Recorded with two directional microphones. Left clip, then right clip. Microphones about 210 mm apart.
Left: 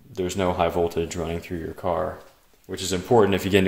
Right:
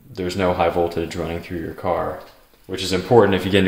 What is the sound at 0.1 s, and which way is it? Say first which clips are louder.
Speech: right 4 dB; 45° left (ahead or behind).